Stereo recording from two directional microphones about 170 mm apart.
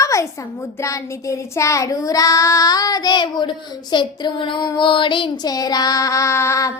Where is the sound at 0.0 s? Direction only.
20° left (ahead or behind).